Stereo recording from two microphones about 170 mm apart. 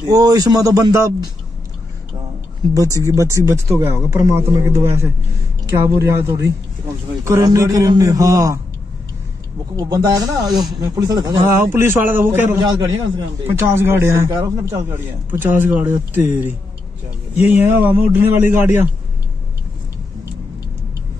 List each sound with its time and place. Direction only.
0.1 s a man's voice: 20° right (ahead or behind)
2.7 s a man's voice: 20° right (ahead or behind)
9.8 s a man's voice: 15° right (ahead or behind)